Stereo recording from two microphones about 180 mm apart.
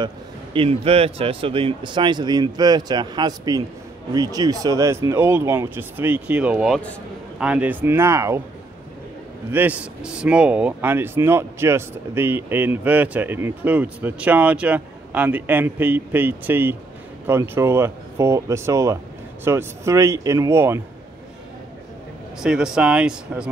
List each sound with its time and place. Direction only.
0.0 s speech: 30° right (ahead or behind)
9.5 s speech: 10° right (ahead or behind)
22.4 s speech: 5° right (ahead or behind)